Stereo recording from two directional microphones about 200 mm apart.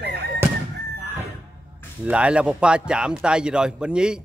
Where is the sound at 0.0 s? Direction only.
55° right (ahead or behind).